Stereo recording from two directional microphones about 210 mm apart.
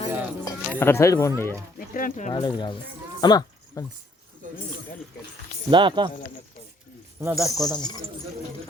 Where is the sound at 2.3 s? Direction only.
20° left (ahead or behind).